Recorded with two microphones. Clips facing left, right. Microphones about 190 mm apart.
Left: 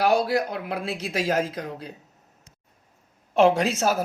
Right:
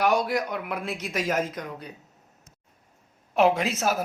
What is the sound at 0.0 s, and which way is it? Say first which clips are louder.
Speech: left 2 dB; 30° left (ahead or behind).